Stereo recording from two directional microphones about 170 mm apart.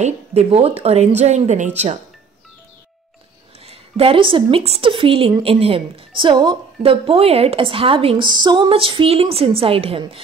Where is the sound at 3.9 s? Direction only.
35° right (ahead or behind).